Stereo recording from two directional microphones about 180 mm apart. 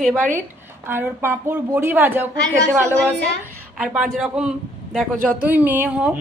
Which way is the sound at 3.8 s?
5° right (ahead or behind).